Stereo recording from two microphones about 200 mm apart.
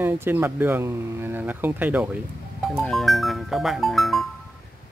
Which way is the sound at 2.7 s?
Centre (ahead or behind).